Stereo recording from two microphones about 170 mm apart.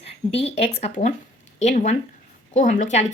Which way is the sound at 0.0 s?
40° left (ahead or behind).